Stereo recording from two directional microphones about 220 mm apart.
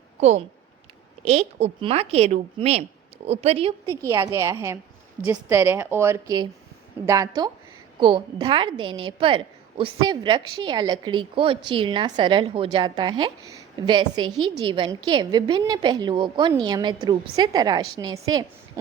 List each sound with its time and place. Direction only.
0.2 s a woman's voice: 30° right (ahead or behind)
4.0 s a woman's voice: 10° right (ahead or behind)